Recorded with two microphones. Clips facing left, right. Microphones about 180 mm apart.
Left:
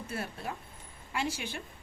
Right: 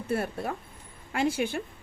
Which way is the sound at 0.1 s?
55° right (ahead or behind).